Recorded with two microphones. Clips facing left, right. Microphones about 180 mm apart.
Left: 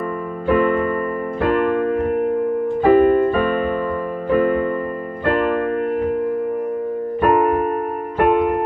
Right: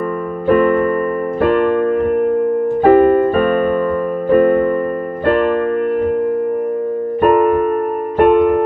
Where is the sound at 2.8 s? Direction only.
60° right (ahead or behind).